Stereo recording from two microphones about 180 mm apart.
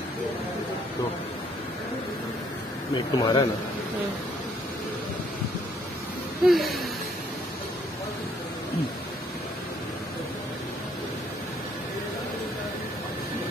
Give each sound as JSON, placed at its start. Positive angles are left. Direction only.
{"t": 2.9, "sound": "speech", "side_deg": 25}
{"t": 6.4, "sound": "speech", "side_deg": 0}